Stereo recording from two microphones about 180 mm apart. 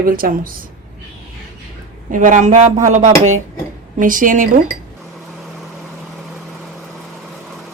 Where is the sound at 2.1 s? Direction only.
45° right (ahead or behind).